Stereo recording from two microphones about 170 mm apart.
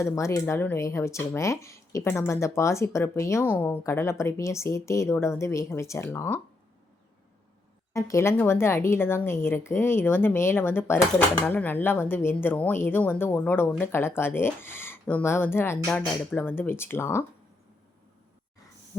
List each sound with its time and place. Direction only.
0.0 s speech: 15° left (ahead or behind)
7.9 s speech: 15° left (ahead or behind)